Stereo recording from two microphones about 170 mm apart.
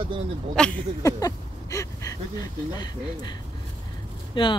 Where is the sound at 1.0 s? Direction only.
20° left (ahead or behind).